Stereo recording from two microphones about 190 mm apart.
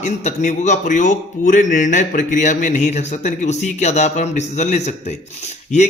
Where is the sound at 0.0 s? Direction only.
40° left (ahead or behind).